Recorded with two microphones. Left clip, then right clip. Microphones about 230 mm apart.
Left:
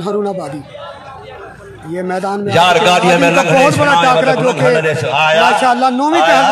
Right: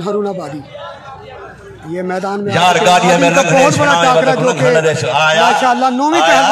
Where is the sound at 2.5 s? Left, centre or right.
Left; by 3.8 s centre.